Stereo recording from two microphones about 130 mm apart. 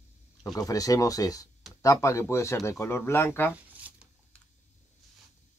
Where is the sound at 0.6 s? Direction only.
25° left (ahead or behind).